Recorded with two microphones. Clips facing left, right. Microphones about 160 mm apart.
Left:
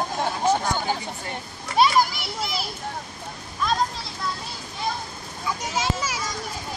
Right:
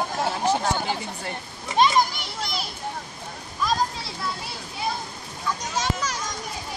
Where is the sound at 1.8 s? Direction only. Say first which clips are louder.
Left 1 dB; 5° left (ahead or behind).